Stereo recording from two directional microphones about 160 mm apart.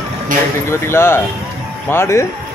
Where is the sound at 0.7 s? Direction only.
15° left (ahead or behind).